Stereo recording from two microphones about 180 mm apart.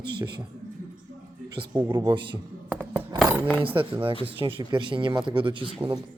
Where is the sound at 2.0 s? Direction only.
25° right (ahead or behind).